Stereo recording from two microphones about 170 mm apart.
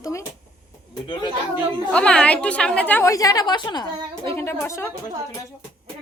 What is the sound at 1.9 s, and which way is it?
A woman's voice, 5° left (ahead or behind).